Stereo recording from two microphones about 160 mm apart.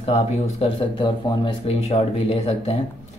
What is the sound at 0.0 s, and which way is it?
Speech, 35° left (ahead or behind).